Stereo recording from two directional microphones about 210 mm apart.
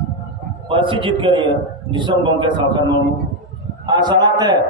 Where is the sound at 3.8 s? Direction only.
20° right (ahead or behind).